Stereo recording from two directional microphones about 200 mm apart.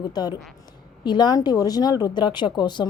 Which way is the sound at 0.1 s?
20° left (ahead or behind).